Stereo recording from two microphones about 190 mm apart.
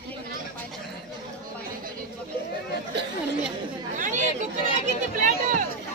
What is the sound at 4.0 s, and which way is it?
Chatter, 40° right (ahead or behind).